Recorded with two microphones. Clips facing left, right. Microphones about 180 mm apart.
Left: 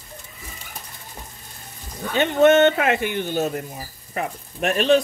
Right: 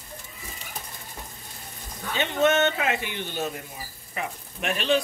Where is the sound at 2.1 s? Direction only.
55° left (ahead or behind).